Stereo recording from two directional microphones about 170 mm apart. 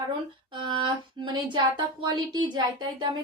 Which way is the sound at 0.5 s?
30° right (ahead or behind).